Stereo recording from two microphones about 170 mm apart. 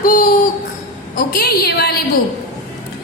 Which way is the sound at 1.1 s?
65° left (ahead or behind).